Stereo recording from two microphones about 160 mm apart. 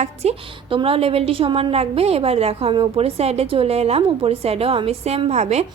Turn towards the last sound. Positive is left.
turn(degrees=-45)  # may be behind; listen again after turning